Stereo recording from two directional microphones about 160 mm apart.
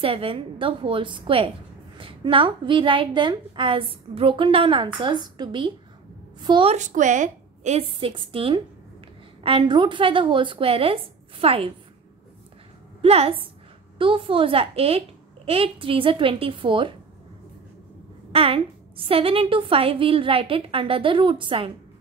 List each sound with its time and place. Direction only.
0.0 s a woman's voice: 35° right (ahead or behind)
6.7 s a woman's voice: 45° right (ahead or behind)
7.8 s a woman's voice: 35° right (ahead or behind)
13.0 s a woman's voice: 40° right (ahead or behind)
18.3 s a woman's voice: 35° right (ahead or behind)